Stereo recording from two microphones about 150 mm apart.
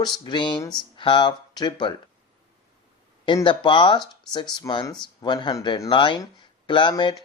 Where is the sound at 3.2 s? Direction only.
35° left (ahead or behind).